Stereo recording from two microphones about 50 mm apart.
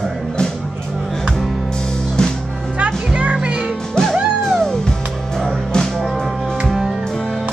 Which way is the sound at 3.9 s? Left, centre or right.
Centre.